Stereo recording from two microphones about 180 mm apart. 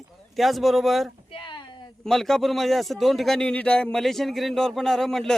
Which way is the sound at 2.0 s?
Centre (ahead or behind).